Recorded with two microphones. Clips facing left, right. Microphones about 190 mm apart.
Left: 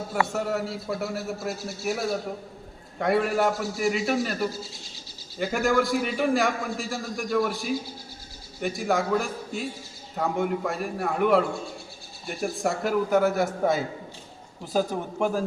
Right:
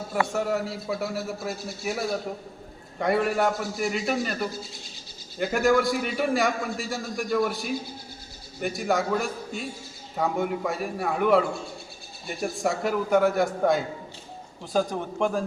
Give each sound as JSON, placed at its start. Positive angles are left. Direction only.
{"t": 0.1, "sound": "a man's voice", "side_deg": 0}
{"t": 3.0, "sound": "a man's voice", "side_deg": 0}